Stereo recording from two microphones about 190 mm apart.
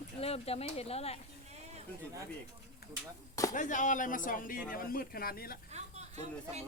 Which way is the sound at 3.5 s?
40° left (ahead or behind).